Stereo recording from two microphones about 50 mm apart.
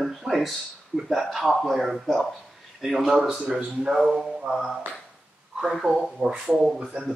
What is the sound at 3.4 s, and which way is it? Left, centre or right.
Speech, centre.